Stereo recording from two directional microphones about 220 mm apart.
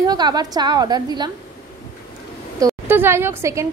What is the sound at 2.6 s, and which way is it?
A woman's voice, 10° right (ahead or behind).